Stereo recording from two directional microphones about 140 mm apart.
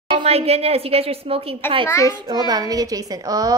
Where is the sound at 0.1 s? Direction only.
40° right (ahead or behind).